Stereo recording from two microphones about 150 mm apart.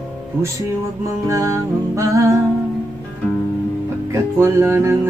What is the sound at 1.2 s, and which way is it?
Music, 20° right (ahead or behind).